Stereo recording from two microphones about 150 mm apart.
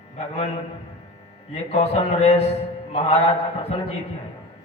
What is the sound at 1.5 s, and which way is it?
A man's voice, 45° left (ahead or behind).